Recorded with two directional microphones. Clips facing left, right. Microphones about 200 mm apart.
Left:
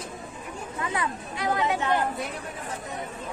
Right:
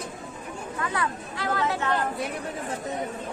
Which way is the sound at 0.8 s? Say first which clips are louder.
Even; 20° left (ahead or behind).